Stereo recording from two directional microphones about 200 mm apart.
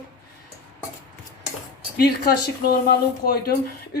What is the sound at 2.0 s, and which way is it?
Speech, 55° left (ahead or behind).